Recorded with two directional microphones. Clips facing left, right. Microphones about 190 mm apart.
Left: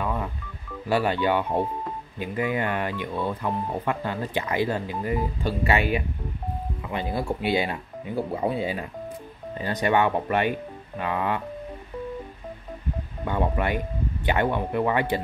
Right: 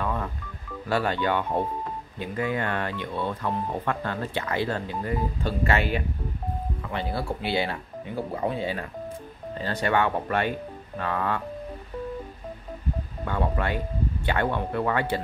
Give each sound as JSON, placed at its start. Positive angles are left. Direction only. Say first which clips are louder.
{"t": 0.0, "sound": "telephone dialing", "louder": "left 1 dB", "side_deg": 10}
{"t": 0.8, "sound": "speech", "louder": "left 2 dB", "side_deg": 15}
{"t": 6.9, "sound": "speech", "louder": "left 3 dB", "side_deg": 15}
{"t": 9.6, "sound": "speech", "louder": "left 2 dB", "side_deg": 15}
{"t": 13.2, "sound": "speech", "louder": "left 2 dB", "side_deg": 15}